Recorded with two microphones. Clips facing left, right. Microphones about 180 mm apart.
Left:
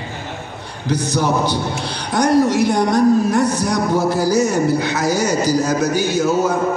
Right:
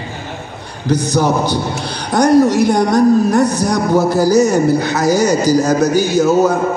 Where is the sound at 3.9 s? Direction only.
40° right (ahead or behind).